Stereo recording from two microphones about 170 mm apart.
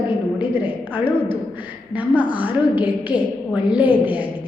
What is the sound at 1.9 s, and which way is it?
A woman's voice, 10° right (ahead or behind).